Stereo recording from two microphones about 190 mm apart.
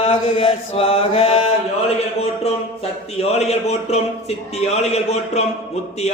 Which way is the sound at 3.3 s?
35° left (ahead or behind).